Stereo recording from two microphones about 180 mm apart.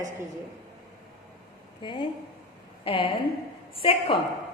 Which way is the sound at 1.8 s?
25° left (ahead or behind).